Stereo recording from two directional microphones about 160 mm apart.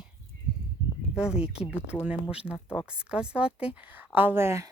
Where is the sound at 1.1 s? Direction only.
5° right (ahead or behind).